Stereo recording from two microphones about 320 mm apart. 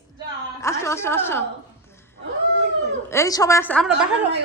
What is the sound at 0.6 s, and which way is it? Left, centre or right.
Speech, centre.